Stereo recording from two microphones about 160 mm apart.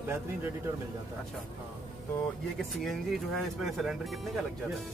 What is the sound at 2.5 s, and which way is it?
Speech, centre (ahead or behind).